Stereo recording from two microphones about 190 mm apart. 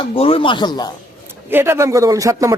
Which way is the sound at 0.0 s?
30° left (ahead or behind).